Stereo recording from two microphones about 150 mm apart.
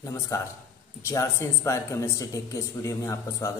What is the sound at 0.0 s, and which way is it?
Speech, 20° left (ahead or behind).